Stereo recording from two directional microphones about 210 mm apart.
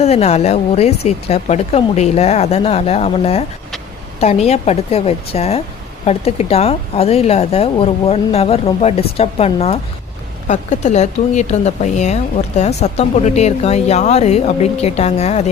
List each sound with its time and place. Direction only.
0.0 s a woman's voice: 30° left (ahead or behind)